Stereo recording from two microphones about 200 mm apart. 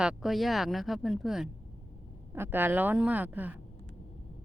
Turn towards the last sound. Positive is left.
turn(degrees=-10)  # may be behind; listen again after turning